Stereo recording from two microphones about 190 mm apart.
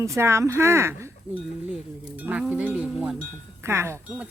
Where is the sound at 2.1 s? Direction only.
5° right (ahead or behind).